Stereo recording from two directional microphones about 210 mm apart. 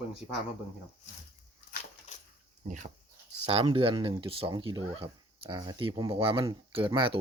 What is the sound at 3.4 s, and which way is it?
Speech, 25° right (ahead or behind).